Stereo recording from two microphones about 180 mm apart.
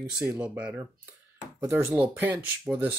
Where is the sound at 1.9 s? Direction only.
5° right (ahead or behind).